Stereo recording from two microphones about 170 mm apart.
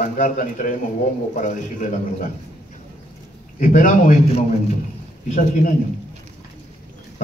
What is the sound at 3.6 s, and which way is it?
Speech, 50° left (ahead or behind).